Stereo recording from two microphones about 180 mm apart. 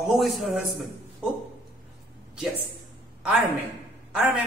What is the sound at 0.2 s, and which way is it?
Speech, centre (ahead or behind).